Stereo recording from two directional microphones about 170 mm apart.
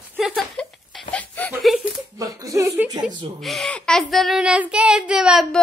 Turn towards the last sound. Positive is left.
turn(degrees=0)  # may be behind; listen again after turning